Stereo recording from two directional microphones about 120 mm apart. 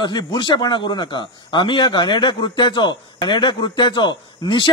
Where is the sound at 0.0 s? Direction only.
35° left (ahead or behind).